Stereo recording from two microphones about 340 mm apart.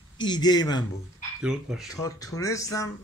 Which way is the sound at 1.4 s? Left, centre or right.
Centre.